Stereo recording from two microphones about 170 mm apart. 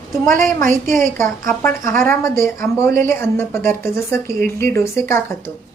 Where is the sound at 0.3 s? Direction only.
55° right (ahead or behind).